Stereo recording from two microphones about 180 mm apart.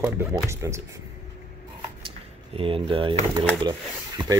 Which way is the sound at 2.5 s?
30° right (ahead or behind).